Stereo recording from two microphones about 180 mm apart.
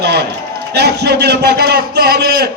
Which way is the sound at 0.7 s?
65° right (ahead or behind).